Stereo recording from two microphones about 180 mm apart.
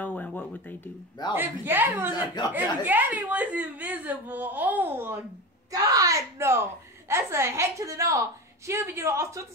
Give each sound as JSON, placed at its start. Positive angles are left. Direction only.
{"t": 0.0, "sound": "a sound", "side_deg": 10}
{"t": 1.3, "sound": "a woman's voice", "side_deg": -10}
{"t": 2.4, "sound": "speech", "side_deg": 25}
{"t": 2.8, "sound": "a woman's voice", "side_deg": -10}